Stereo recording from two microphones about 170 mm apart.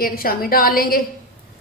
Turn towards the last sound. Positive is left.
turn(degrees=60)  # may be behind; listen again after turning